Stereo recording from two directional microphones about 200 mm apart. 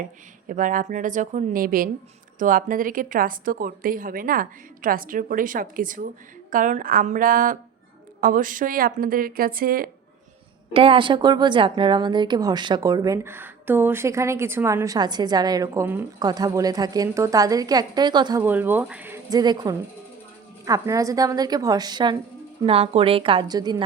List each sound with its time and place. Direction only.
0.0 s a woman's voice: 40° right (ahead or behind)
10.8 s a woman's voice: 25° right (ahead or behind)
18.4 s a woman's voice: 10° right (ahead or behind)